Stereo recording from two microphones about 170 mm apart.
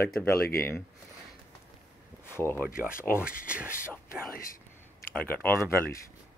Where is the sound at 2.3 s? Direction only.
15° left (ahead or behind).